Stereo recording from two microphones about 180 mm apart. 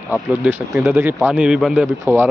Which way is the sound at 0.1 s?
5° right (ahead or behind).